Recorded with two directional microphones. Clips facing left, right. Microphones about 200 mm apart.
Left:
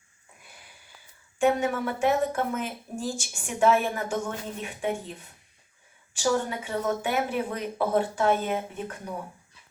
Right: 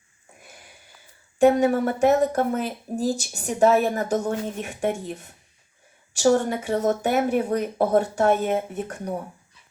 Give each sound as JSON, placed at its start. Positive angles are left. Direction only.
{"t": 1.4, "sound": "speech", "side_deg": -35}
{"t": 6.2, "sound": "speech", "side_deg": -45}